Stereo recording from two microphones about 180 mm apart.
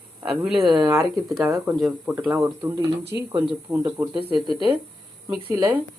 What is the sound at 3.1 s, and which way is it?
Speech, 15° right (ahead or behind).